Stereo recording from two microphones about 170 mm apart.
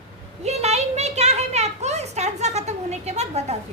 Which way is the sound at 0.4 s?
40° right (ahead or behind).